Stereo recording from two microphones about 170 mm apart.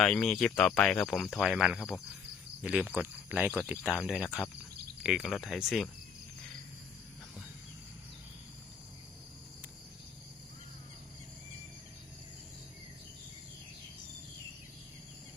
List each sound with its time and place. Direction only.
0.0 s speech: centre (ahead or behind)
2.6 s cricket: 10° right (ahead or behind)
3.7 s speech: 5° right (ahead or behind)